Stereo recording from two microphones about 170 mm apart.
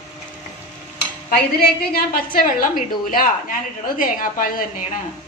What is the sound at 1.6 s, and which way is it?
Speech, 65° left (ahead or behind).